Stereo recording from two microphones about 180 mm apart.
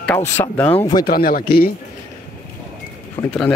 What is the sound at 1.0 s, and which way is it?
Speech, 55° left (ahead or behind).